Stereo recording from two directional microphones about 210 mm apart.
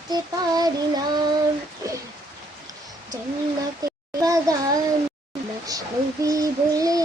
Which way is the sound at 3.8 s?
15° right (ahead or behind).